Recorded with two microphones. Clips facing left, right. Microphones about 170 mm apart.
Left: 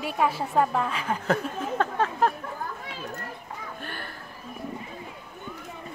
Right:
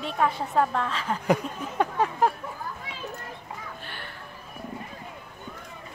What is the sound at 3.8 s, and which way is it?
Music, 45° left (ahead or behind).